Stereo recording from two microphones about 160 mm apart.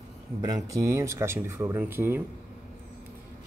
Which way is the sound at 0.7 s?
20° right (ahead or behind).